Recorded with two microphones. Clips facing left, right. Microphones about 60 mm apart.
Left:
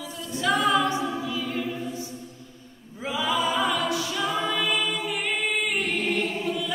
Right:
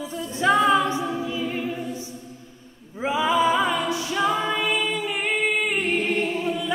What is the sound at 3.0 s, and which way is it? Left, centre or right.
A capella, right.